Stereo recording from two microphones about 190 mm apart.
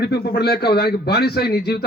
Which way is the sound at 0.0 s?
55° left (ahead or behind).